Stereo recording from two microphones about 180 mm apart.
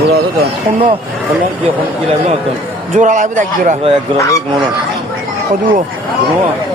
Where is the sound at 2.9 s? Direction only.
45° right (ahead or behind).